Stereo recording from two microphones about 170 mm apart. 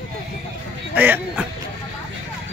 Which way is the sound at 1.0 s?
10° right (ahead or behind).